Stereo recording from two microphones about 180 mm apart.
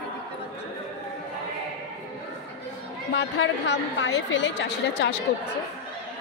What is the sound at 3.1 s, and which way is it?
A woman's voice, 75° left (ahead or behind).